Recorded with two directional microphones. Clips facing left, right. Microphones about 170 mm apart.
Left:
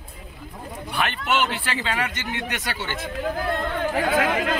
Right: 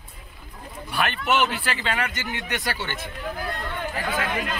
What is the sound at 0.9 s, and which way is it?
Speech, 20° left (ahead or behind).